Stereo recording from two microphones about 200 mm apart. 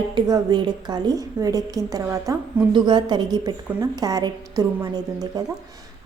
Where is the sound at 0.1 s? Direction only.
20° right (ahead or behind).